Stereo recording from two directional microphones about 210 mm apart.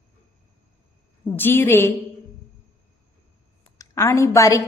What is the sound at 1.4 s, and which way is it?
Speech, 10° left (ahead or behind).